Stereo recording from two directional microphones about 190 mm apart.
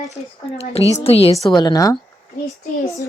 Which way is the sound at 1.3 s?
20° left (ahead or behind).